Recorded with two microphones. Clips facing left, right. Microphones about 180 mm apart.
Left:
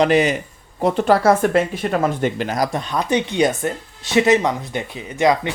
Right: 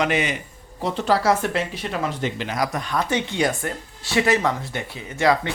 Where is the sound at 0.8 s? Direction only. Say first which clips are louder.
Left 5 dB; 55° left (ahead or behind).